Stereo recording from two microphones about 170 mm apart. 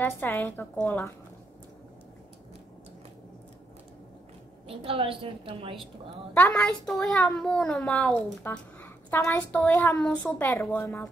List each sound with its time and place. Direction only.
0.0 s a woman's voice: 10° left (ahead or behind)
4.6 s a woman's voice: 30° right (ahead or behind)
6.3 s a woman's voice: 15° left (ahead or behind)
6.6 s a child's voice: centre (ahead or behind); by 9.9 s 15° left (ahead or behind)
9.9 s a woman's voice: 5° left (ahead or behind)